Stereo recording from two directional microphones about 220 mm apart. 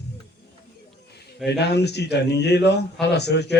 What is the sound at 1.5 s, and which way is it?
A man's voice, 50° left (ahead or behind).